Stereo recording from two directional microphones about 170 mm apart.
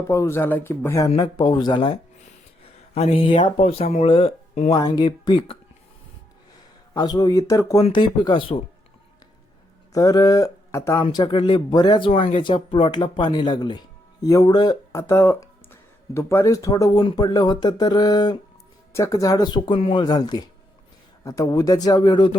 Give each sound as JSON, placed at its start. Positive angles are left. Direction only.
{"t": 0.1, "sound": "speech", "side_deg": 15}
{"t": 1.1, "sound": "speech", "side_deg": 25}
{"t": 4.7, "sound": "speech", "side_deg": 25}
{"t": 6.9, "sound": "speech", "side_deg": 20}
{"t": 7.8, "sound": "speech", "side_deg": 35}
{"t": 9.9, "sound": "speech", "side_deg": 20}
{"t": 11.0, "sound": "speech", "side_deg": 30}